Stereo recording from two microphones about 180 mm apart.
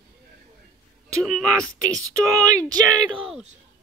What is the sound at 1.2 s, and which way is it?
Speech, centre (ahead or behind).